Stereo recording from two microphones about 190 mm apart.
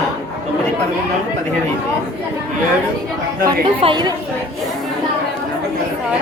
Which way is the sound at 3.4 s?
25° right (ahead or behind).